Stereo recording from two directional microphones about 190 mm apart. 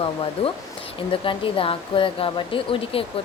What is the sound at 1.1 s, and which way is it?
Speech, 30° left (ahead or behind).